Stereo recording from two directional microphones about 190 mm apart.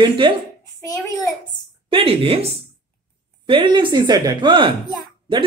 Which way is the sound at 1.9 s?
30° right (ahead or behind).